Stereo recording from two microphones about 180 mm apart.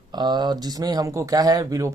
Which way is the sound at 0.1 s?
25° right (ahead or behind).